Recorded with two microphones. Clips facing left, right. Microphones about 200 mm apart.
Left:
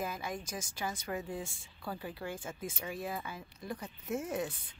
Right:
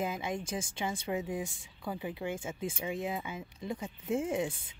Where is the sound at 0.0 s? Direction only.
20° right (ahead or behind).